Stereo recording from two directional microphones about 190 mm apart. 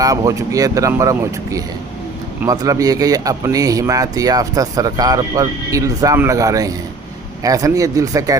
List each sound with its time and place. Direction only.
0.0 s speech: 20° right (ahead or behind)